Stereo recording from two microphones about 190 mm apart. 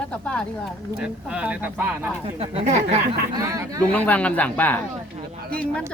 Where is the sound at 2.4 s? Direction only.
35° right (ahead or behind).